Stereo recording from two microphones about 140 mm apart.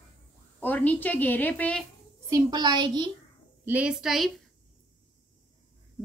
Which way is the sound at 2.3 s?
30° right (ahead or behind).